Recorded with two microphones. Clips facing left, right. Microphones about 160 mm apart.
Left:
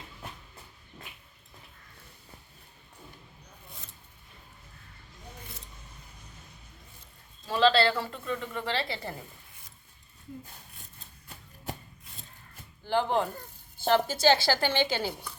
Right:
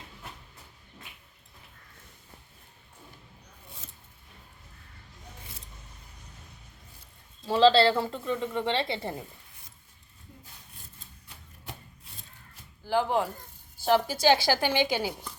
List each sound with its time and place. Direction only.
7.4 s speech: 25° right (ahead or behind)
12.8 s speech: 5° right (ahead or behind)